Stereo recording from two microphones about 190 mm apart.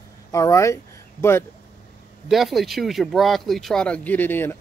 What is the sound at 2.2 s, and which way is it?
Speech, centre (ahead or behind).